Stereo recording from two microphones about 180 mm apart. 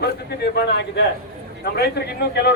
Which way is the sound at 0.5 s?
65° left (ahead or behind).